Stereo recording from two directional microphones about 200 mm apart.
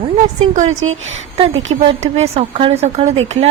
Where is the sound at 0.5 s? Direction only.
35° right (ahead or behind).